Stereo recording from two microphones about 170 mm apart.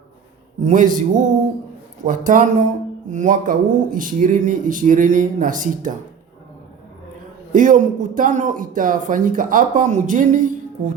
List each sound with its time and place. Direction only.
0.6 s speech: 50° right (ahead or behind)
7.5 s speech: 50° right (ahead or behind)